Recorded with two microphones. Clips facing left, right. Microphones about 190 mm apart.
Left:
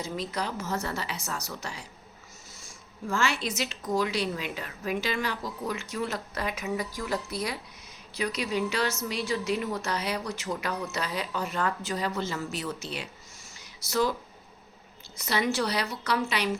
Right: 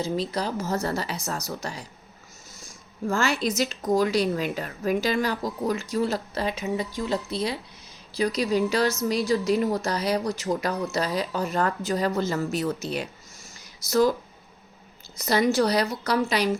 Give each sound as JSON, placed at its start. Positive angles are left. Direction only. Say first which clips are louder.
{"t": 0.0, "sound": "a woman's voice", "louder": "right 5 dB", "side_deg": -30}
{"t": 3.1, "sound": "a woman's voice", "louder": "right 4 dB", "side_deg": -40}
{"t": 15.2, "sound": "a woman's voice", "louder": "right 6 dB", "side_deg": -40}